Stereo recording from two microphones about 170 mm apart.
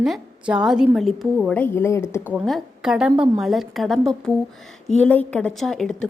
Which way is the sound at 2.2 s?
Centre (ahead or behind).